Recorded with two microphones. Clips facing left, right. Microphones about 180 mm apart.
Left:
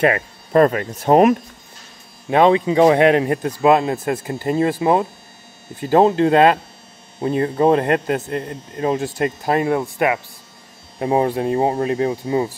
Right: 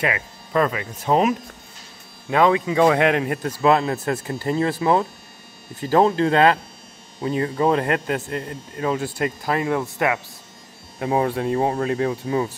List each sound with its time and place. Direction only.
0.0 s speech: 45° left (ahead or behind)
2.3 s speech: 25° left (ahead or behind)
7.3 s speech: 30° left (ahead or behind)
9.8 s speech: 15° left (ahead or behind)
11.0 s speech: 30° left (ahead or behind)